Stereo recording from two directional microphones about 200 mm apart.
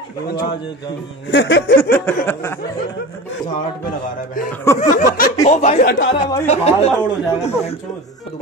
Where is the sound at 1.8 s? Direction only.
10° left (ahead or behind).